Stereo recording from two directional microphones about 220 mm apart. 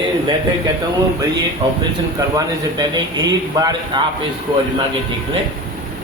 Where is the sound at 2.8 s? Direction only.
20° right (ahead or behind).